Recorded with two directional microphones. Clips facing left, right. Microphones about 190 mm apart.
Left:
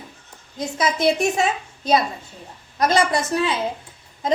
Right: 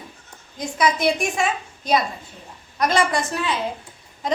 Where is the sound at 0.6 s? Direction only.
25° left (ahead or behind).